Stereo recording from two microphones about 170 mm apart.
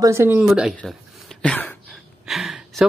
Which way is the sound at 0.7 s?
Centre (ahead or behind).